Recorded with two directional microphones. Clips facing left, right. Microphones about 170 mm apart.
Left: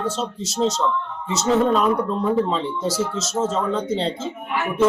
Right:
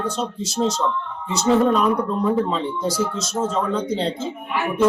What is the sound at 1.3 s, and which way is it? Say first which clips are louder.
Speech: right 1 dB; centre (ahead or behind).